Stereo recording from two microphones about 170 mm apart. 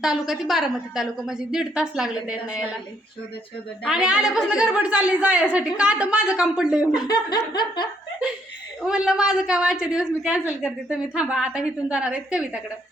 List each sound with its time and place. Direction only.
0.0 s speech: centre (ahead or behind)
3.8 s speech: 5° right (ahead or behind)
7.1 s laughter: 25° left (ahead or behind)
8.8 s speech: 5° right (ahead or behind)